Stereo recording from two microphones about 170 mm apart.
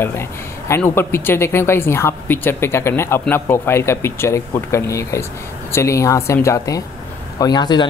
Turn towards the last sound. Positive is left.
turn(degrees=25)  # may be behind; listen again after turning